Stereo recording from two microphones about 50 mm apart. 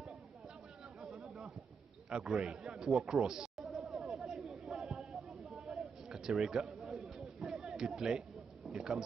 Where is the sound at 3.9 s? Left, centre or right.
Centre.